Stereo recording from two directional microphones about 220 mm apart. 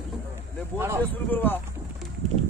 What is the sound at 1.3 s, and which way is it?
Speech, 10° left (ahead or behind).